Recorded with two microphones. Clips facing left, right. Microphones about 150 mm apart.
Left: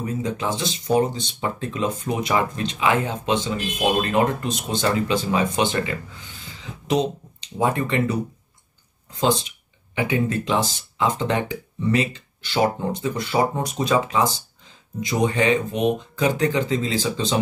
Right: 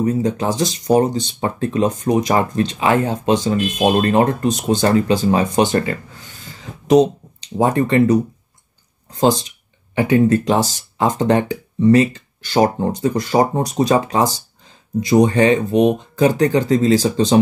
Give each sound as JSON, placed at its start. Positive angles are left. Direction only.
{"t": 0.0, "sound": "speech", "side_deg": -40}
{"t": 3.8, "sound": "speech", "side_deg": -55}
{"t": 4.1, "sound": "speech", "side_deg": -40}
{"t": 9.2, "sound": "speech", "side_deg": -35}